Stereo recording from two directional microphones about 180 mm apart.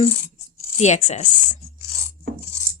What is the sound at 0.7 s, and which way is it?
Speech, 40° left (ahead or behind).